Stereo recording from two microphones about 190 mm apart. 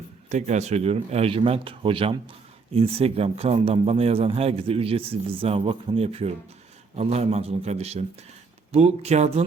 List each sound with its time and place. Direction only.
0.3 s a man's voice: 40° right (ahead or behind)